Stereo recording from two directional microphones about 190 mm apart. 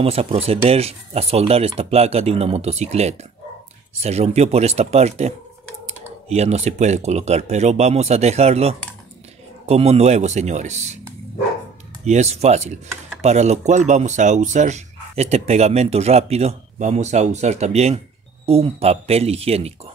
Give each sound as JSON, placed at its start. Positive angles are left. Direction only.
{"t": 0.0, "sound": "speech", "side_deg": -30}
{"t": 12.0, "sound": "speech", "side_deg": -35}